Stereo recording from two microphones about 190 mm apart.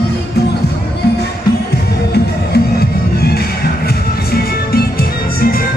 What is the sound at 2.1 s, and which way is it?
Music, 55° left (ahead or behind).